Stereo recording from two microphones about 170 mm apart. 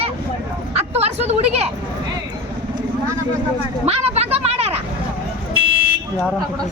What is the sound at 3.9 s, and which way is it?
Speech, 40° right (ahead or behind).